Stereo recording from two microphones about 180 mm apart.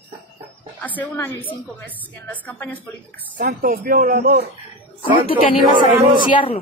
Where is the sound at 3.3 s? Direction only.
50° right (ahead or behind).